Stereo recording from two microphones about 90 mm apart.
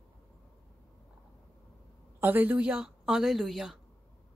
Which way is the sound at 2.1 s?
20° right (ahead or behind).